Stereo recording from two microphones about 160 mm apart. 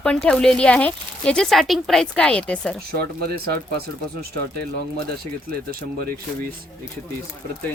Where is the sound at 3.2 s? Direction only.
75° right (ahead or behind).